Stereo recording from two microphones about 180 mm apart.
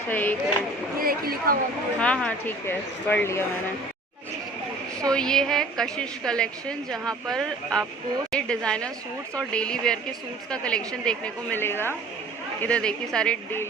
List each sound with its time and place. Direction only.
0.1 s speech: 10° left (ahead or behind)
0.9 s a woman's voice: 55° right (ahead or behind)
2.0 s speech: 5° left (ahead or behind)
5.0 s a woman's voice: 5° left (ahead or behind)